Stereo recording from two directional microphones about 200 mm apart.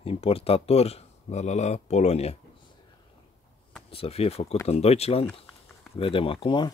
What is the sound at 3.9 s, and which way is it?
Speech, 30° left (ahead or behind).